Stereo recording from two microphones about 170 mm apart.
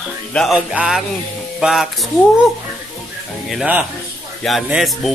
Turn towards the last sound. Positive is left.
turn(degrees=0)  # may be behind; listen again after turning